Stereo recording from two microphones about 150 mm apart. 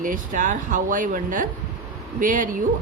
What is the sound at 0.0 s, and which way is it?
Speech, 60° right (ahead or behind).